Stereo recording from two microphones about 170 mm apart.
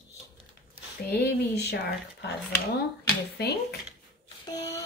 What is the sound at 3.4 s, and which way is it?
Speech, 70° left (ahead or behind).